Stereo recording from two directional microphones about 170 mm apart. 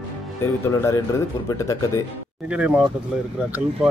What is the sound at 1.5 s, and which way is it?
Speech, 20° left (ahead or behind).